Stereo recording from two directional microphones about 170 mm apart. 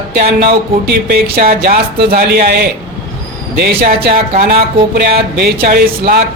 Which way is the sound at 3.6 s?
65° right (ahead or behind).